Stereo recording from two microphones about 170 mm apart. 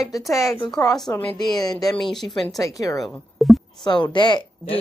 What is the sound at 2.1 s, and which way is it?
Speech, centre (ahead or behind).